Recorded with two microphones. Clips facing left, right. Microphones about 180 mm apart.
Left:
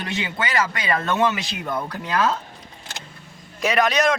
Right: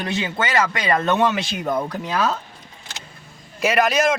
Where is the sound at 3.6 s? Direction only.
5° right (ahead or behind).